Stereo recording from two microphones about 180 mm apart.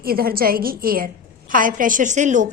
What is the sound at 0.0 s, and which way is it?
A woman's voice, 55° right (ahead or behind).